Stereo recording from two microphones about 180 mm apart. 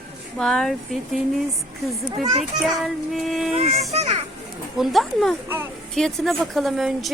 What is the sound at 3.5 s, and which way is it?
Speech, 35° right (ahead or behind).